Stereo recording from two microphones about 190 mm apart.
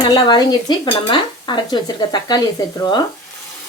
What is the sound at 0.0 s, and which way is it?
Speech, 20° left (ahead or behind).